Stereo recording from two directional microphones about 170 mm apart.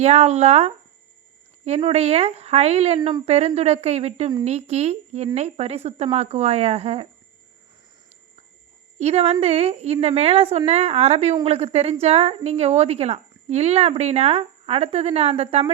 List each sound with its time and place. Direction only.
0.0 s a woman's voice: 40° right (ahead or behind)
9.0 s a woman's voice: 40° right (ahead or behind)